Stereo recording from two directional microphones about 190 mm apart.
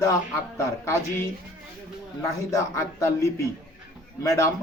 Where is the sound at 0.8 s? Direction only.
15° left (ahead or behind).